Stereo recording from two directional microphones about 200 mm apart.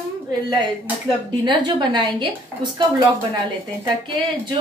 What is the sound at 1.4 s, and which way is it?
Speech, 20° right (ahead or behind).